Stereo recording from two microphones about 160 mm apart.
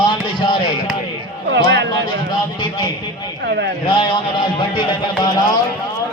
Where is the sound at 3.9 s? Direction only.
30° left (ahead or behind).